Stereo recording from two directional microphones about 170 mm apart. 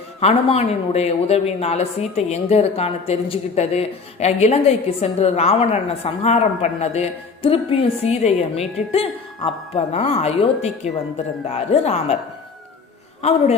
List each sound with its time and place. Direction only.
0.2 s speech: 35° left (ahead or behind)
13.2 s speech: 40° left (ahead or behind)